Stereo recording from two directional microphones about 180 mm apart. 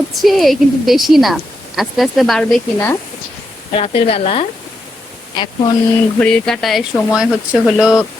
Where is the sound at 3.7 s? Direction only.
35° left (ahead or behind).